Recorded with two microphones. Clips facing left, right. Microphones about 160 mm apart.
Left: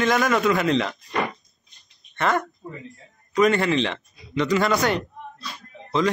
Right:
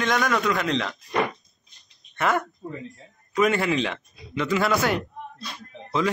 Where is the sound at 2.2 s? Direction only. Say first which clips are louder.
Left 1 dB; 10° right (ahead or behind).